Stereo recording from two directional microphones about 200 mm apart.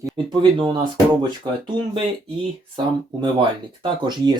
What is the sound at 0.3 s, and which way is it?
Speech, 25° right (ahead or behind).